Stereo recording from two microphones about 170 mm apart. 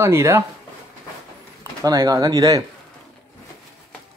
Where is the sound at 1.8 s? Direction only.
20° right (ahead or behind).